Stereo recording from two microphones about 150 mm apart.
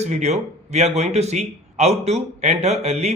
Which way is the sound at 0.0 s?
50° right (ahead or behind).